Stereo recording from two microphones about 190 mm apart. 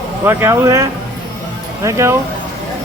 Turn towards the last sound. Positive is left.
turn(degrees=-15)  # may be behind; listen again after turning